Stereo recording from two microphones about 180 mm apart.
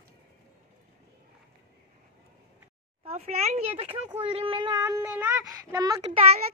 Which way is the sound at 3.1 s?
35° right (ahead or behind).